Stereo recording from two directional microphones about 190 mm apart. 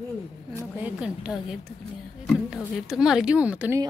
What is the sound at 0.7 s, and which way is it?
Speech, 10° right (ahead or behind).